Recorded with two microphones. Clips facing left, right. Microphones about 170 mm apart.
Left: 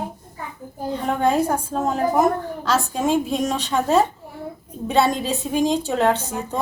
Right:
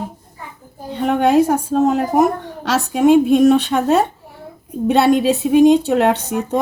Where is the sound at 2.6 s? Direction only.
70° right (ahead or behind).